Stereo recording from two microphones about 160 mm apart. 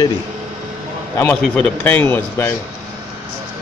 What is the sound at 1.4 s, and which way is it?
Speech, 10° left (ahead or behind).